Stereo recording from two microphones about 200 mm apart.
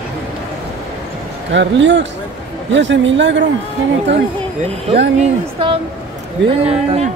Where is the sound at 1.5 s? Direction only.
65° right (ahead or behind).